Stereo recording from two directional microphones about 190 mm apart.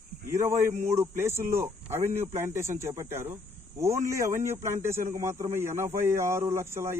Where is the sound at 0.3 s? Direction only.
15° right (ahead or behind).